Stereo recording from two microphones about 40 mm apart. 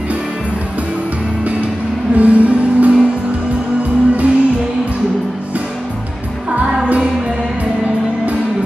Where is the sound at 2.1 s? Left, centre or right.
Right.